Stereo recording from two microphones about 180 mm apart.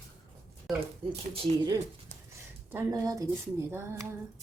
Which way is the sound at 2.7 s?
15° right (ahead or behind).